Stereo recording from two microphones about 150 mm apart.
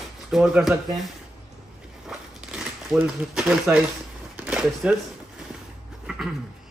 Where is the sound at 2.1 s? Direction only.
5° right (ahead or behind).